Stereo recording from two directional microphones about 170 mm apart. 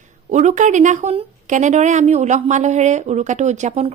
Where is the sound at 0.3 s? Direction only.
45° right (ahead or behind).